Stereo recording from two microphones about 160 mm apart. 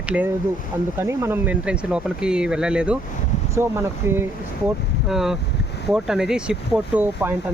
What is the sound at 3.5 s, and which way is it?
Speech, 15° right (ahead or behind).